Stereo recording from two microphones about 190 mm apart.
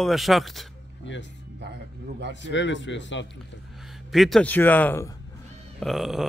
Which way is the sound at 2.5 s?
75° left (ahead or behind).